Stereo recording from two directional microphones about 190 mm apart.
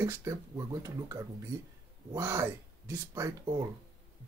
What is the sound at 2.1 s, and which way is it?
Speech, 15° right (ahead or behind).